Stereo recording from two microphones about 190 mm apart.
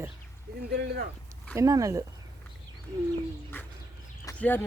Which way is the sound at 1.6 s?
15° right (ahead or behind).